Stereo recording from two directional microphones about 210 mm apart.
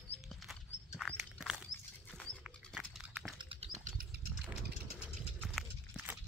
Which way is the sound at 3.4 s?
25° right (ahead or behind).